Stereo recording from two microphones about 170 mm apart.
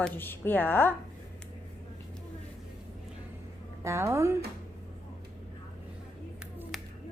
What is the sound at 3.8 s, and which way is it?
Speech, 15° right (ahead or behind).